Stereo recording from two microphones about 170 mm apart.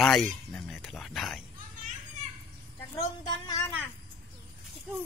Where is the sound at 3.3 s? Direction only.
25° left (ahead or behind).